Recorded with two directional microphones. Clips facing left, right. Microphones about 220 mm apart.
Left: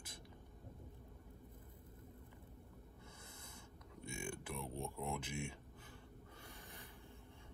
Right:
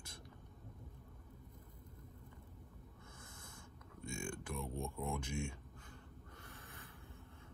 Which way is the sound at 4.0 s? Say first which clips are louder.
Right 2 dB; 5° left (ahead or behind).